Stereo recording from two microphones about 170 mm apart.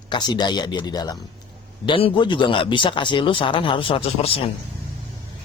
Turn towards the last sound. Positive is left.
turn(degrees=35)  # may be behind; listen again after turning